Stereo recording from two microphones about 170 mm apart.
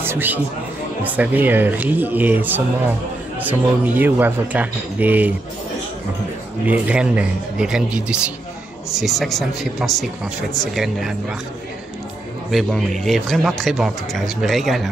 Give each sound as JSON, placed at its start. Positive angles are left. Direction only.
{"t": 0.0, "sound": "a man's voice", "side_deg": -10}
{"t": 6.6, "sound": "a man's voice", "side_deg": -10}
{"t": 12.4, "sound": "a man's voice", "side_deg": 0}